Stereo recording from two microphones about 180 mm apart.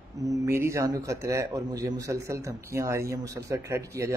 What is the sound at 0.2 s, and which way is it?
Speech, 20° right (ahead or behind).